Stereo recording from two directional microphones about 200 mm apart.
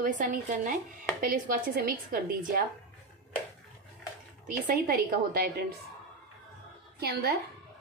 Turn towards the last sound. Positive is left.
turn(degrees=-50)  # may be behind; listen again after turning